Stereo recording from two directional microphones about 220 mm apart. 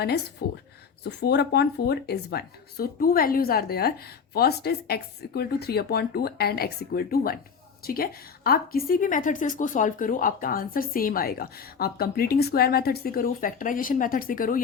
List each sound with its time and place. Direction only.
0.4 s speech: 40° left (ahead or behind)